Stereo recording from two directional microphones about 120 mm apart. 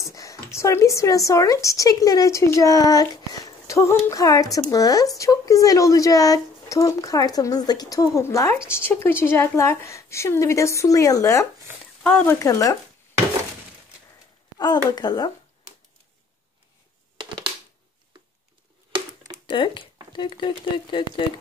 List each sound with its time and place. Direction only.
0.0 s a woman's voice: 25° left (ahead or behind)
12.0 s speech: 15° left (ahead or behind)
12.4 s a woman's voice: 25° left (ahead or behind)
14.9 s speech: 35° left (ahead or behind)
19.5 s speech: 45° left (ahead or behind)